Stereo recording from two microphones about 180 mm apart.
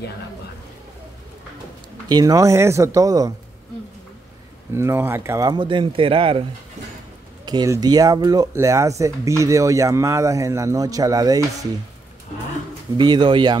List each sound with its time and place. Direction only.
2.0 s speech: 20° right (ahead or behind)
4.7 s speech: 15° right (ahead or behind); by 6.4 s 30° right (ahead or behind)
7.4 s speech: 20° right (ahead or behind)
12.9 s speech: 25° right (ahead or behind)